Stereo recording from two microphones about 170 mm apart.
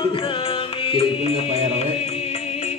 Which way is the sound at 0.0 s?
30° left (ahead or behind).